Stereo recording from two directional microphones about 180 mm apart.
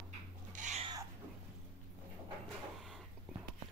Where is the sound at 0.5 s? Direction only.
45° right (ahead or behind).